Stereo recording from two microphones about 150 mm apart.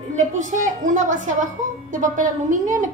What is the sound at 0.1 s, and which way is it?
A woman's voice, 55° right (ahead or behind).